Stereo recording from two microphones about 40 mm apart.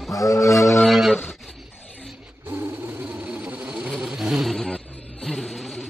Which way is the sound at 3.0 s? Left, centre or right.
Right.